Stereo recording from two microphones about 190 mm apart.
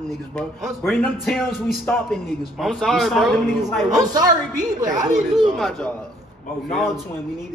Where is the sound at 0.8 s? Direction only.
Centre (ahead or behind).